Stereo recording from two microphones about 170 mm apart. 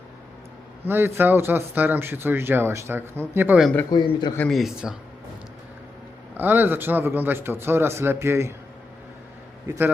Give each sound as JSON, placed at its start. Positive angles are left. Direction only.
{"t": 0.9, "sound": "speech", "side_deg": -15}
{"t": 3.6, "sound": "speech", "side_deg": 5}
{"t": 3.8, "sound": "a man's voice", "side_deg": 25}
{"t": 4.4, "sound": "speech", "side_deg": 0}
{"t": 6.3, "sound": "speech", "side_deg": -10}
{"t": 9.6, "sound": "speech", "side_deg": -15}